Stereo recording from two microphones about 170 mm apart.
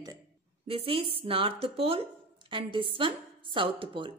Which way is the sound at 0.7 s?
35° right (ahead or behind).